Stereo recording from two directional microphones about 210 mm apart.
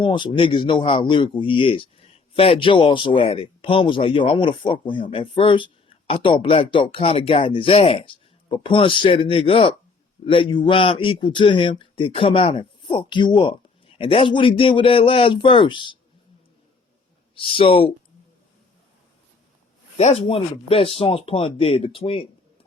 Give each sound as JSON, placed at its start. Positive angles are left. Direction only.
{"t": 0.0, "sound": "a man's voice", "side_deg": 25}
{"t": 17.3, "sound": "a man's voice", "side_deg": 25}
{"t": 20.0, "sound": "a man's voice", "side_deg": 30}